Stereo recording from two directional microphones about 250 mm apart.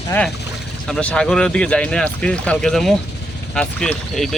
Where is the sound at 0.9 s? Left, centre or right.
Centre.